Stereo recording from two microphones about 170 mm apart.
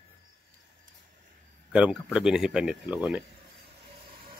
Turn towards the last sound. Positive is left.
turn(degrees=-35)  # may be behind; listen again after turning